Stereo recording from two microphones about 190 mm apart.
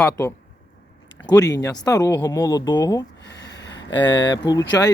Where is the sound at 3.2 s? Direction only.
65° left (ahead or behind).